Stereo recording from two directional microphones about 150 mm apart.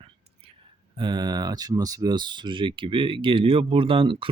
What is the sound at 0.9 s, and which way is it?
Speech, 30° right (ahead or behind).